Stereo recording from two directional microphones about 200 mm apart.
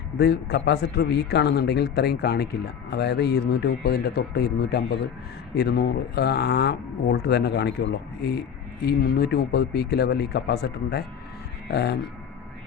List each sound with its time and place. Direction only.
0.2 s speech: 55° left (ahead or behind)